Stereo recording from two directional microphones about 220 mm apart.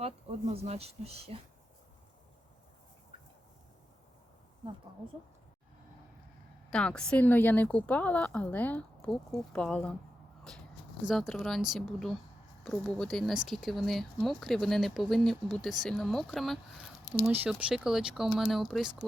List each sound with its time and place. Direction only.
0.0 s speech: 30° right (ahead or behind)
6.7 s a woman's voice: 5° left (ahead or behind)
11.0 s speech: centre (ahead or behind)